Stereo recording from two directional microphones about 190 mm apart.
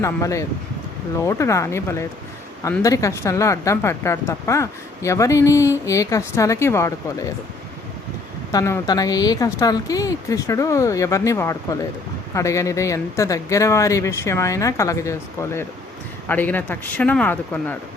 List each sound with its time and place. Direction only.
0.0 s a woman's voice: 15° left (ahead or behind)
8.5 s a woman's voice: 15° left (ahead or behind)